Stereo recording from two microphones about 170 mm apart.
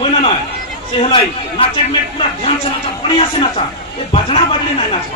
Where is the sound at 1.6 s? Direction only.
35° left (ahead or behind).